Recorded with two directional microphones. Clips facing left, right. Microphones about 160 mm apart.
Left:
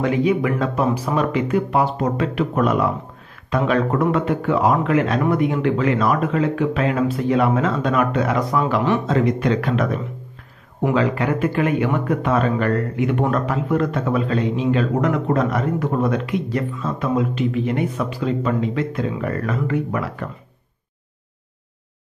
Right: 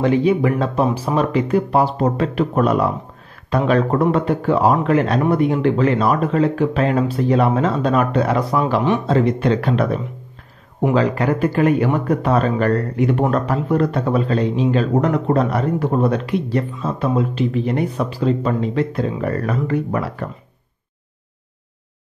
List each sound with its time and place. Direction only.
0.0 s speech: 30° right (ahead or behind)
11.0 s speech: 35° right (ahead or behind)